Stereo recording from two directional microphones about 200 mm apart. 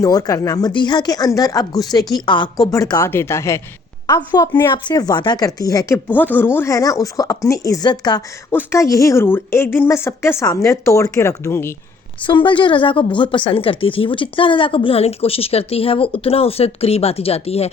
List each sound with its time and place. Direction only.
0.0 s a woman's voice: 20° left (ahead or behind)
12.2 s a woman's voice: 25° left (ahead or behind)